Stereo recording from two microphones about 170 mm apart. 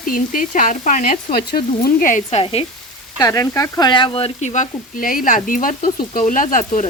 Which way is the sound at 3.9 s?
30° left (ahead or behind).